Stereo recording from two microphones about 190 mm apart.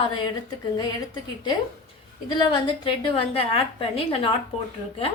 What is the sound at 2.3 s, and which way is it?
Speech, 25° left (ahead or behind).